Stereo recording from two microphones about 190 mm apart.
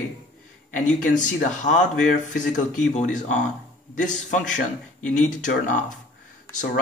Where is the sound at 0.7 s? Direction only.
45° left (ahead or behind).